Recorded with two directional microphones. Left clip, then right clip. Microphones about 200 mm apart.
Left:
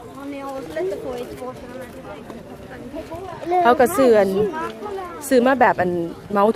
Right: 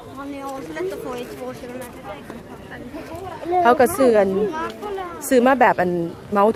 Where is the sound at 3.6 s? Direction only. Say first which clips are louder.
Even; 5° right (ahead or behind).